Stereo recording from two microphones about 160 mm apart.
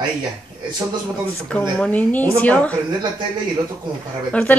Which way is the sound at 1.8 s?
10° left (ahead or behind).